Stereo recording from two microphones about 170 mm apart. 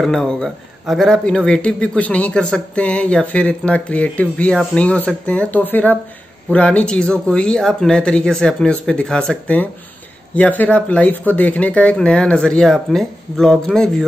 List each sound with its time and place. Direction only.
0.0 s speech: centre (ahead or behind)